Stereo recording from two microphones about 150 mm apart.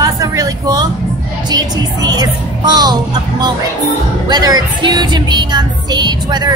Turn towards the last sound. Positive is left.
turn(degrees=-30)  # may be behind; listen again after turning